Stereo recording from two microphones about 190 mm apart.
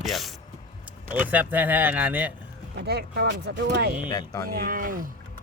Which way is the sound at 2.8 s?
60° right (ahead or behind).